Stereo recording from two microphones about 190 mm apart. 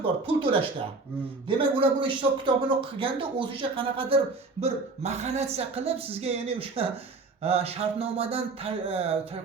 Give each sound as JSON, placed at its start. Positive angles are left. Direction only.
{"t": 0.0, "sound": "speech", "side_deg": -25}